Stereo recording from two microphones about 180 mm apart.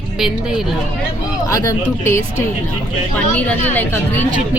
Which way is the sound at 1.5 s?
15° left (ahead or behind).